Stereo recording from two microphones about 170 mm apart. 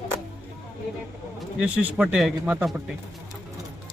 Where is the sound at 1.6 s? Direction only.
10° right (ahead or behind).